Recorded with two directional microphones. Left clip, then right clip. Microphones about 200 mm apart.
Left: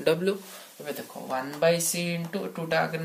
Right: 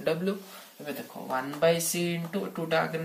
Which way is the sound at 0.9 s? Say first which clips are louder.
Left 1 dB; 35° left (ahead or behind).